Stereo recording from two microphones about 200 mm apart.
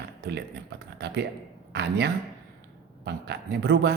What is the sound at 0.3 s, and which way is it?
Speech, 55° right (ahead or behind).